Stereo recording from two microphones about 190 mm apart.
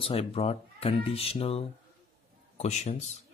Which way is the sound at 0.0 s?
30° left (ahead or behind).